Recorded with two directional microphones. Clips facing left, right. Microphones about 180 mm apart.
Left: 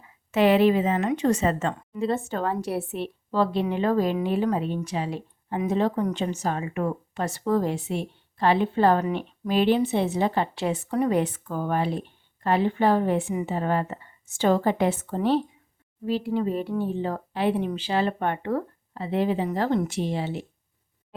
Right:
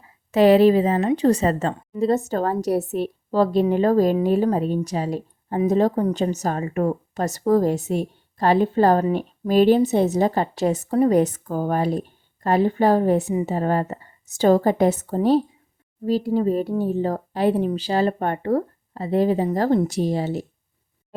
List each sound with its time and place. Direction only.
0.3 s a woman's voice: 35° right (ahead or behind)